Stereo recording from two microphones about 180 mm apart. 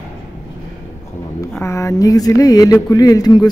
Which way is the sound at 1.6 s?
15° left (ahead or behind).